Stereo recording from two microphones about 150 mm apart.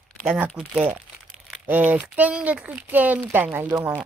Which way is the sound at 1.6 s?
10° right (ahead or behind).